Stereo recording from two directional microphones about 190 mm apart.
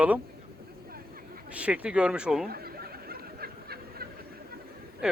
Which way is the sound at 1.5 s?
5° right (ahead or behind).